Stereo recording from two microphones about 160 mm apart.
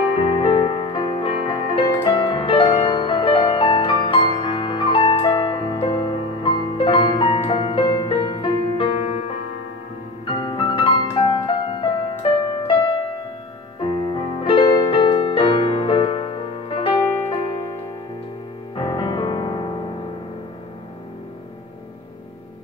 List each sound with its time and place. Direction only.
0.4 s music: 35° left (ahead or behind)
10.2 s music: 30° left (ahead or behind)
18.8 s music: 25° left (ahead or behind)